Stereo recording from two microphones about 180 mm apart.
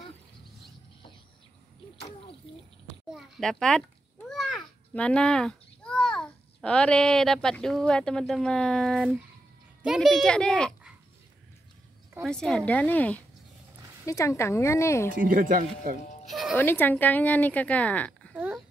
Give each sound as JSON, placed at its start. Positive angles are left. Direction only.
{"t": 3.1, "sound": "a child's voice", "side_deg": 0}
{"t": 12.2, "sound": "speech", "side_deg": 5}
{"t": 15.0, "sound": "speech", "side_deg": -50}
{"t": 16.3, "sound": "music", "side_deg": 0}
{"t": 16.5, "sound": "speech", "side_deg": 10}
{"t": 18.3, "sound": "a sound", "side_deg": -5}